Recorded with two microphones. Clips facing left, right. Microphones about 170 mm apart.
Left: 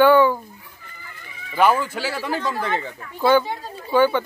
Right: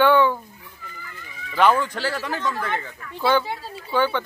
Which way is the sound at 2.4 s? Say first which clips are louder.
Left 2 dB; 25° left (ahead or behind).